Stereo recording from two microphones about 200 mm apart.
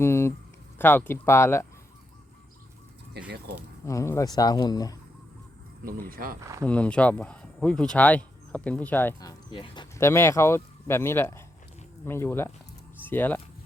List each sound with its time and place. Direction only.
0.0 s a sound: 10° left (ahead or behind)
0.8 s speech: 10° left (ahead or behind)
3.2 s speech: 55° right (ahead or behind)
3.8 s speech: 15° left (ahead or behind)
5.8 s speech: 45° right (ahead or behind)
6.4 s speech: 15° right (ahead or behind)
6.7 s speech: 5° left (ahead or behind)